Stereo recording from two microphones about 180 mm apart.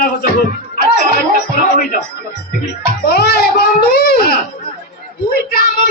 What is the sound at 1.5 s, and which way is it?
Speech, 50° left (ahead or behind).